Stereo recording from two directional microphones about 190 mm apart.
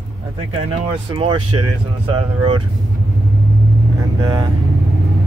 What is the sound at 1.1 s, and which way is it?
Speech, 25° right (ahead or behind).